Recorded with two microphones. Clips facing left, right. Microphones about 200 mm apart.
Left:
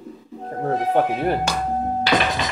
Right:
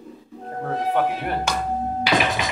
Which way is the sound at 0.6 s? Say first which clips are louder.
Left 3 dB; 35° left (ahead or behind).